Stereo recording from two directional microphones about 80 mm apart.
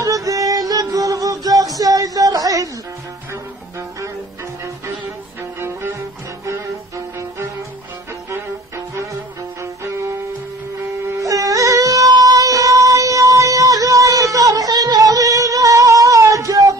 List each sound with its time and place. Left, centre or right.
0.0 s music: right
5.6 s cello: right
8.3 s music: right
11.1 s music: right